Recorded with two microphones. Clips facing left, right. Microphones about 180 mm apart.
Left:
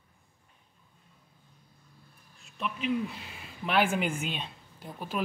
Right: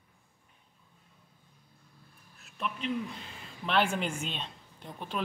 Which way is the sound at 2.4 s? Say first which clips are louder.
Left 2 dB; 5° left (ahead or behind).